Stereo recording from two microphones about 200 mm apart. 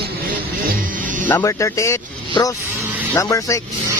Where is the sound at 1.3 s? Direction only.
10° left (ahead or behind).